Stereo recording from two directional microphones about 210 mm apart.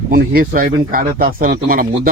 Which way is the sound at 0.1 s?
45° right (ahead or behind).